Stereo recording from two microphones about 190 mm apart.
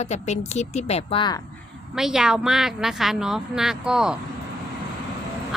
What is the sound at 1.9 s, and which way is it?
A woman's voice, 5° right (ahead or behind).